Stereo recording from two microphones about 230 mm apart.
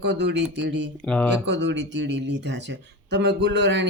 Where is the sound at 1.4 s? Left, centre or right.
Right.